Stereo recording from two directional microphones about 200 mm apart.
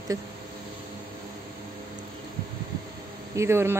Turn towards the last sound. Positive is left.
turn(degrees=-15)  # may be behind; listen again after turning